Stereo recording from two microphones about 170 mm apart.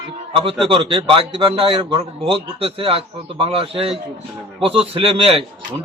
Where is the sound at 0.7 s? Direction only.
30° right (ahead or behind).